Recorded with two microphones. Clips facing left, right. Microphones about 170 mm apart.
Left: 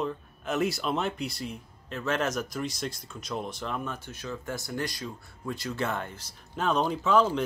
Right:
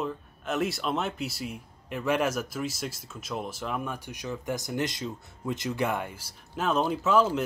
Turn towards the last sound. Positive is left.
turn(degrees=-5)  # may be behind; listen again after turning